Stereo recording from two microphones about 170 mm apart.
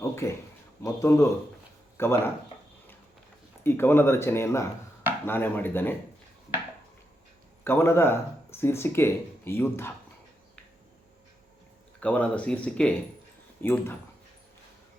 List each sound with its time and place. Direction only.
0.0 s a sound: 15° left (ahead or behind)
0.8 s speech: 15° left (ahead or behind)
3.6 s speech: 15° left (ahead or behind)
7.6 s speech: 15° left (ahead or behind)
11.9 s speech: 10° left (ahead or behind)